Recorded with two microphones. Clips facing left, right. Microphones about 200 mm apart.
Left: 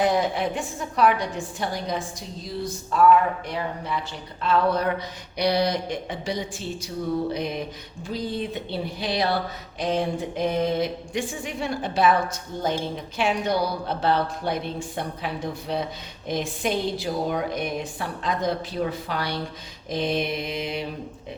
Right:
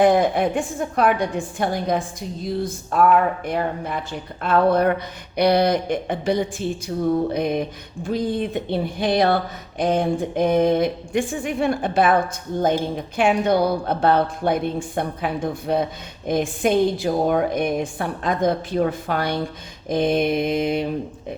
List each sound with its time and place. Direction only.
0.0 s a woman's voice: 55° right (ahead or behind)